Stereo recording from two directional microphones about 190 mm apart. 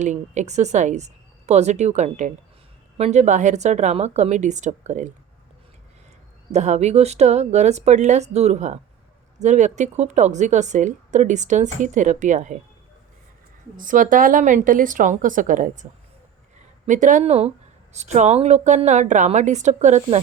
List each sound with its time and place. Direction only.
0.0 s a woman's voice: 40° right (ahead or behind)
6.5 s a woman's voice: 35° right (ahead or behind)
13.7 s a woman's voice: 45° right (ahead or behind)